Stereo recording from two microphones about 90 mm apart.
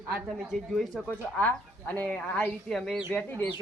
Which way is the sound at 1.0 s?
20° left (ahead or behind).